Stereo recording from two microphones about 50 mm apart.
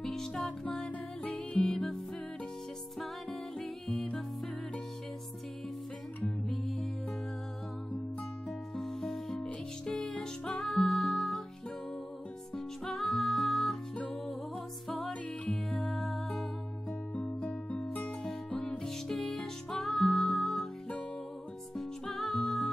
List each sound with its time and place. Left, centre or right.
0.0 s music: centre
3.5 s music: centre
6.2 s music: centre
8.7 s music: centre
12.5 s music: centre
15.5 s music: centre
17.1 s music: left
18.8 s music: centre
21.7 s music: centre